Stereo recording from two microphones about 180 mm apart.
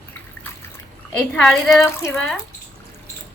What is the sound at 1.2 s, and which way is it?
Speech, 5° left (ahead or behind).